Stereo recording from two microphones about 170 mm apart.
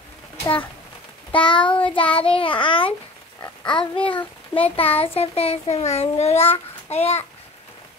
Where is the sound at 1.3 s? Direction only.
30° left (ahead or behind).